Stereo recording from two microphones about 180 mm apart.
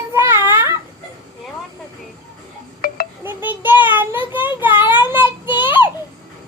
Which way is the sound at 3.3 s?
10° right (ahead or behind).